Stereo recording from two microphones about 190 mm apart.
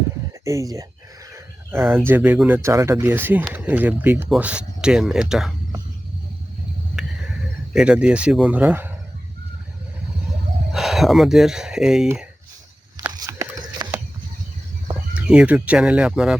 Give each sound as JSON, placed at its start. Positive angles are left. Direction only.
{"t": 0.4, "sound": "speech", "side_deg": -15}
{"t": 1.3, "sound": "bird", "side_deg": -10}
{"t": 2.0, "sound": "speech", "side_deg": -10}
{"t": 7.0, "sound": "a sound", "side_deg": 0}
{"t": 7.7, "sound": "speech", "side_deg": -5}
{"t": 10.7, "sound": "speech", "side_deg": 0}
{"t": 13.0, "sound": "a sound", "side_deg": -15}
{"t": 15.1, "sound": "speech", "side_deg": -5}